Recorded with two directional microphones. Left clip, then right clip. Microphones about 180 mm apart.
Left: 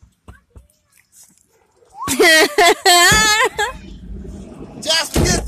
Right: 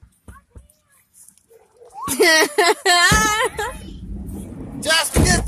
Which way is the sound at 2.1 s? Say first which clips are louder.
Left 3 dB; 30° left (ahead or behind).